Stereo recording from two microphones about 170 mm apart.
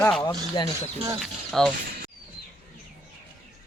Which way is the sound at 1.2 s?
Centre (ahead or behind).